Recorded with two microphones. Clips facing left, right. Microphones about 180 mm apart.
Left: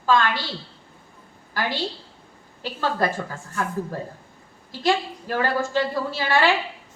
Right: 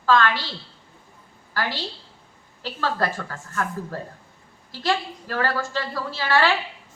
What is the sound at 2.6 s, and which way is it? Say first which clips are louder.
Speech: left 1 dB; 15° left (ahead or behind).